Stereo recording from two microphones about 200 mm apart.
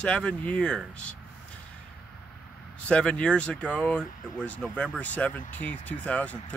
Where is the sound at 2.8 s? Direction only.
5° left (ahead or behind).